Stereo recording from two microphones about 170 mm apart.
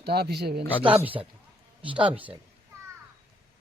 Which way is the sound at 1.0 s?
10° right (ahead or behind).